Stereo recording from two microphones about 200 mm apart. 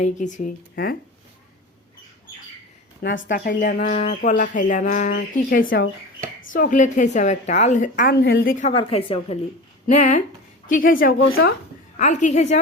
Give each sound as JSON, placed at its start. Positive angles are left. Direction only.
{"t": 0.0, "sound": "speech", "side_deg": 40}
{"t": 3.0, "sound": "speech", "side_deg": 60}
{"t": 3.2, "sound": "speech", "side_deg": 45}
{"t": 8.1, "sound": "a woman's voice", "side_deg": 55}
{"t": 8.7, "sound": "a woman's voice", "side_deg": 25}
{"t": 11.2, "sound": "speech", "side_deg": 90}
{"t": 11.9, "sound": "speech", "side_deg": 35}